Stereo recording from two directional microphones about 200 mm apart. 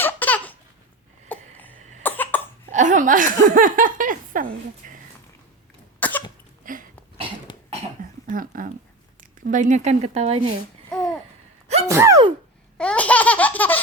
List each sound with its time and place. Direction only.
0.0 s baby laughter: 10° left (ahead or behind)
1.3 s a sound: 10° left (ahead or behind)
2.0 s cough: 10° left (ahead or behind)
2.7 s speech: 40° right (ahead or behind)
6.0 s cough: 10° left (ahead or behind)
6.6 s a sound: 45° right (ahead or behind)
8.3 s speech: 45° right (ahead or behind)
10.8 s babbling: 5° left (ahead or behind)
11.9 s speech: 15° right (ahead or behind)
12.7 s laughter: 5° left (ahead or behind)